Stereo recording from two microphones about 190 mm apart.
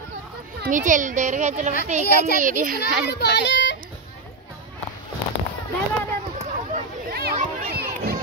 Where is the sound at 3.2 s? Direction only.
65° left (ahead or behind).